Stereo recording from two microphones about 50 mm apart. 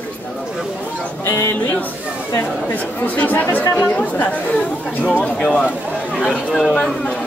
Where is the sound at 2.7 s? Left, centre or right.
Left.